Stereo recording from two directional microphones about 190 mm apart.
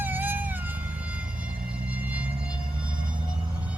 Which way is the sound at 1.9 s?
10° right (ahead or behind).